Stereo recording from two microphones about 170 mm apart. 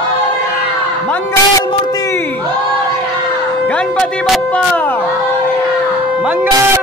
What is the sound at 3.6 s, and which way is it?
Music, 5° left (ahead or behind).